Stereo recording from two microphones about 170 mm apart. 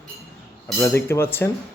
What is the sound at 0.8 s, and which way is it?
Speech, 15° left (ahead or behind).